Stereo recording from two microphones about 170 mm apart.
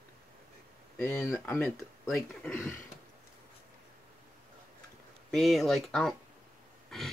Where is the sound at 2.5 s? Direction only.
15° left (ahead or behind).